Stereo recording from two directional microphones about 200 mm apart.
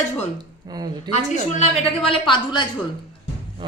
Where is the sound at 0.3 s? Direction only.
20° right (ahead or behind).